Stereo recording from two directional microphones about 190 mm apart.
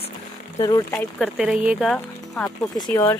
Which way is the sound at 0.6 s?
15° left (ahead or behind).